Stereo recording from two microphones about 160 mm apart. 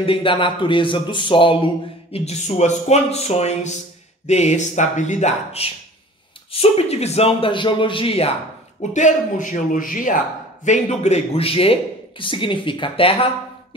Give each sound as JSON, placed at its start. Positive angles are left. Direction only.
{"t": 0.0, "sound": "a man's voice", "side_deg": 35}
{"t": 2.1, "sound": "a man's voice", "side_deg": 45}
{"t": 8.9, "sound": "a man's voice", "side_deg": 50}